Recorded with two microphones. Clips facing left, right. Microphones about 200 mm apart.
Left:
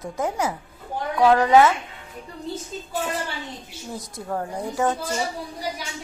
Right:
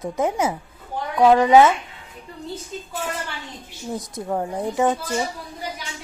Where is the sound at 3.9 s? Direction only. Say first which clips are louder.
Right 4 dB; 15° right (ahead or behind).